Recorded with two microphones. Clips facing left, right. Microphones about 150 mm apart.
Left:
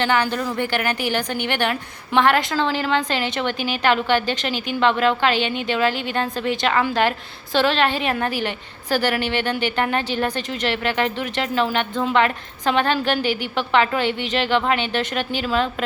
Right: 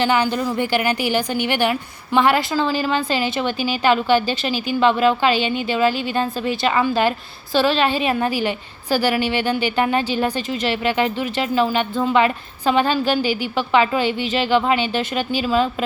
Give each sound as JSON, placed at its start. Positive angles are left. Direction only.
{"t": 0.0, "sound": "a woman's voice", "side_deg": -10}
{"t": 4.8, "sound": "a woman's voice", "side_deg": -10}
{"t": 13.2, "sound": "a woman's voice", "side_deg": 55}
{"t": 14.3, "sound": "a woman's voice", "side_deg": -10}